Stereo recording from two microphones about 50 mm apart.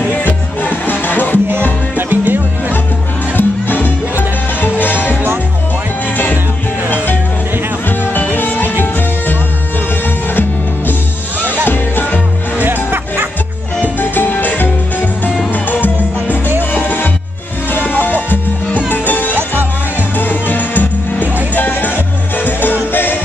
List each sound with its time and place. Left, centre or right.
0.1 s music: left
2.0 s music: right
3.3 s music: left
8.0 s music: left
11.6 s music: left
12.5 s music: right
13.9 s music: left
19.3 s music: right
20.2 s music: left